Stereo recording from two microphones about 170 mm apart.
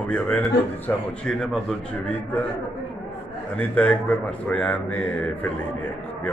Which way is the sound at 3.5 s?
5° left (ahead or behind).